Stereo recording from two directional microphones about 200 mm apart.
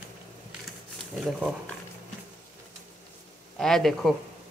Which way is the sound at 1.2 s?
5° right (ahead or behind).